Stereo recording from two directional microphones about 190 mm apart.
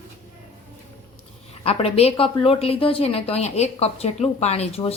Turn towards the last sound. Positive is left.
turn(degrees=30)  # may be behind; listen again after turning